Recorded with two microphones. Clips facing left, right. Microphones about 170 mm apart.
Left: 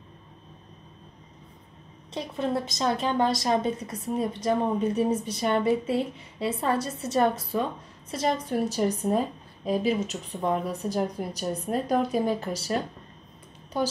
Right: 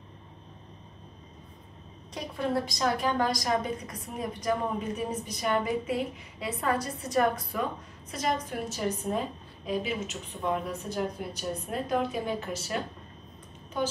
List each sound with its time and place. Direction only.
2.1 s a woman's voice: 20° left (ahead or behind); by 12.7 s 40° left (ahead or behind)
13.7 s speech: 35° left (ahead or behind)